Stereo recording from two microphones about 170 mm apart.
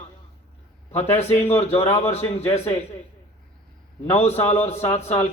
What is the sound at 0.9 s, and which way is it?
Speech, 40° left (ahead or behind).